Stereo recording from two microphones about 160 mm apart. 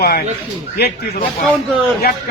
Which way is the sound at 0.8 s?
90° left.